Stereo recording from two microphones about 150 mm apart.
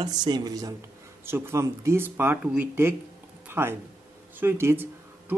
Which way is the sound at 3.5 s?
15° right (ahead or behind).